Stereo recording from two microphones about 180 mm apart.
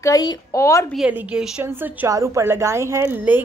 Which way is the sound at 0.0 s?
20° left (ahead or behind).